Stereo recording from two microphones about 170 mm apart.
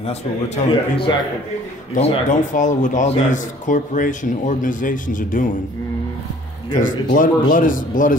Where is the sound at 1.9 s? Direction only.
40° left (ahead or behind).